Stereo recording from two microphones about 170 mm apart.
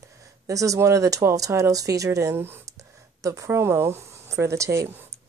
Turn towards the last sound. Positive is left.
turn(degrees=-15)  # may be behind; listen again after turning